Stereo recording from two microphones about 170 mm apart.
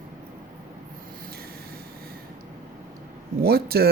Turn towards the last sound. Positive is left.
turn(degrees=-65)  # may be behind; listen again after turning